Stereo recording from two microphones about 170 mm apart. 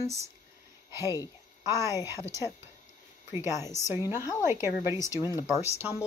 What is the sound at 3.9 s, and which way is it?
Speech, 15° right (ahead or behind).